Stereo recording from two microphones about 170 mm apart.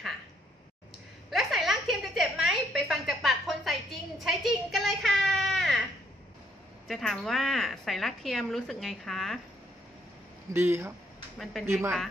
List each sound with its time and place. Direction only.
1.3 s a sound: centre (ahead or behind)
6.9 s a woman's voice: centre (ahead or behind)
10.5 s speech: 15° right (ahead or behind)